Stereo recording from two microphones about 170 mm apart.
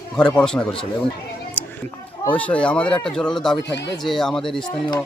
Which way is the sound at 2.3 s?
5° left (ahead or behind).